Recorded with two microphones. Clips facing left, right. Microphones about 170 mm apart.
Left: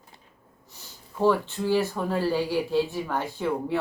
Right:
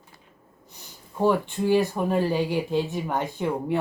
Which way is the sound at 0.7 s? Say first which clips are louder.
Right 1 dB; 15° right (ahead or behind).